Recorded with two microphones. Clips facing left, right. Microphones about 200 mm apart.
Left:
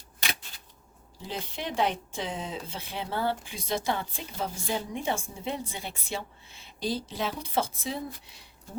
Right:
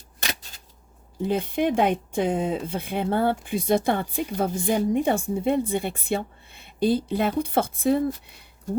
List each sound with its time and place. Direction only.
1.2 s a woman's voice: 55° right (ahead or behind)